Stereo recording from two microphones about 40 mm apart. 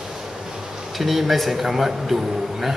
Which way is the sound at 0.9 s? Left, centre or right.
Centre.